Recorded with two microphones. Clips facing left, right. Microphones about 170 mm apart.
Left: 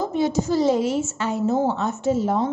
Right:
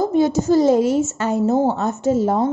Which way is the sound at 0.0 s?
45° right (ahead or behind).